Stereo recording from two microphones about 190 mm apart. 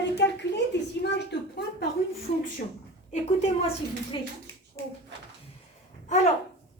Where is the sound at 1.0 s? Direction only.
60° left (ahead or behind).